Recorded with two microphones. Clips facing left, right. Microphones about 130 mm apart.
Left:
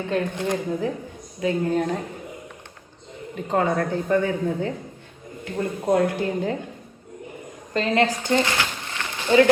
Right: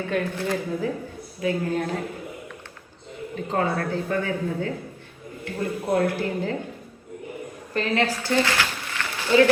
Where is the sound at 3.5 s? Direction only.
20° left (ahead or behind).